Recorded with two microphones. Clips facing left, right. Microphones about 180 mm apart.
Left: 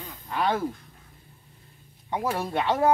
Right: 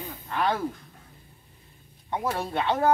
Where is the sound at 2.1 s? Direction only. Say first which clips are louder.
Left 1 dB; 15° left (ahead or behind).